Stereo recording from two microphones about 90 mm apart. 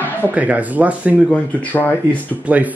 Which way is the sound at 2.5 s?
15° right (ahead or behind).